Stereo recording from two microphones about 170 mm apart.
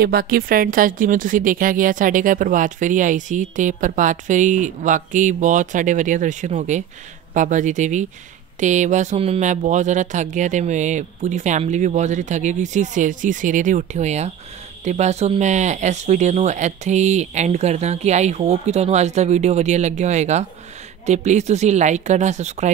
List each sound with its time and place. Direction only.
0.0 s a woman's voice: 60° right (ahead or behind); by 22.7 s 40° right (ahead or behind)